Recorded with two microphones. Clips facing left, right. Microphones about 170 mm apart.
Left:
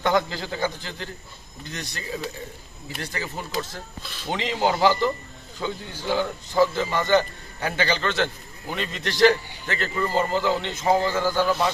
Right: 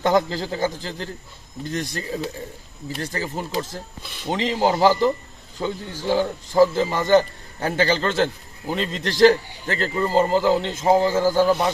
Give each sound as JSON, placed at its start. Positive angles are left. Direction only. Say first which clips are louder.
{"t": 0.0, "sound": "speech", "louder": "right 3 dB", "side_deg": -35}
{"t": 1.6, "sound": "speech", "louder": "right 7 dB", "side_deg": -45}